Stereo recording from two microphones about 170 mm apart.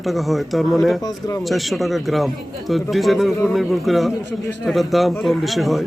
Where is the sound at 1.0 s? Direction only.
20° left (ahead or behind).